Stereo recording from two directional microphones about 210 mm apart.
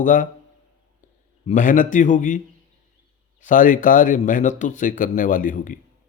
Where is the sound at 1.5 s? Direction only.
40° left (ahead or behind).